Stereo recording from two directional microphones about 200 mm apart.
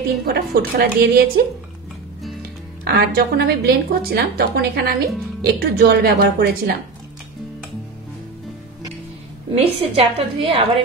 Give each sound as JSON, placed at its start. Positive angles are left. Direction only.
{"t": 0.2, "sound": "a woman's voice", "side_deg": -50}
{"t": 2.8, "sound": "a woman's voice", "side_deg": -50}
{"t": 9.6, "sound": "a woman's voice", "side_deg": -30}